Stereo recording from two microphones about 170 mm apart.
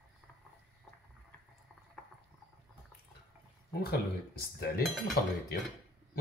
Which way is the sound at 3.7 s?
65° left (ahead or behind).